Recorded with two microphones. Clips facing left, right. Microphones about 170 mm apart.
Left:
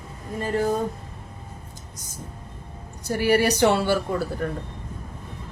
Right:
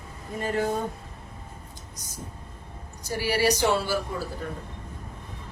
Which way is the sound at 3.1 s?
55° left (ahead or behind).